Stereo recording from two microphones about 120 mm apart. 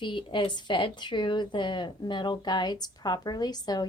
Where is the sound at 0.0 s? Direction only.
45° left (ahead or behind).